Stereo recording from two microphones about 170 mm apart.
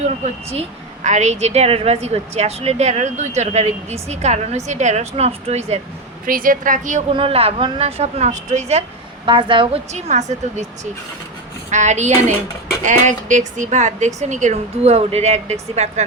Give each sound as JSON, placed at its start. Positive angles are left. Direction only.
{"t": 1.0, "sound": "a woman's voice", "side_deg": -45}
{"t": 6.2, "sound": "speech", "side_deg": -55}
{"t": 7.1, "sound": "a woman's voice", "side_deg": -30}
{"t": 9.2, "sound": "a woman's voice", "side_deg": -30}
{"t": 9.9, "sound": "speech", "side_deg": -45}
{"t": 11.7, "sound": "a woman's voice", "side_deg": -45}